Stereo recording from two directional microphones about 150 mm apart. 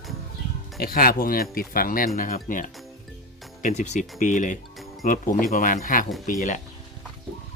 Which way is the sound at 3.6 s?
50° left (ahead or behind).